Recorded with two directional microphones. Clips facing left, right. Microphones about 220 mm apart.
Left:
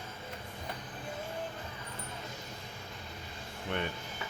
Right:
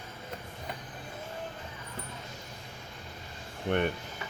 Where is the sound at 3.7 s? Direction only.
55° right (ahead or behind).